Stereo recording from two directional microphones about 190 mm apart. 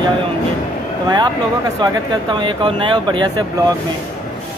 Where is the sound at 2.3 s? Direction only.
25° right (ahead or behind).